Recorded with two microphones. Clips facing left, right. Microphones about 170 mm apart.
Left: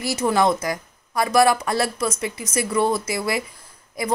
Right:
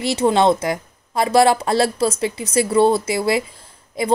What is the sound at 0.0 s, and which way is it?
A woman's voice, 25° right (ahead or behind).